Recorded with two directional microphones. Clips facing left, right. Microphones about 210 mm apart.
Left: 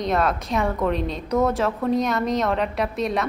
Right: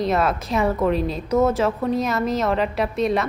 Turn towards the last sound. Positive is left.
turn(degrees=0)  # may be behind; listen again after turning